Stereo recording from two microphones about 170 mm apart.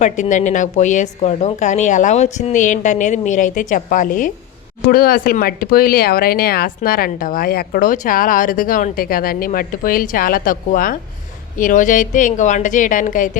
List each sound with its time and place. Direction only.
0.0 s a woman's voice: 45° left (ahead or behind)